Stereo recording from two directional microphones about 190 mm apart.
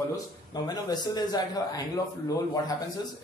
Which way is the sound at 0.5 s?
20° left (ahead or behind).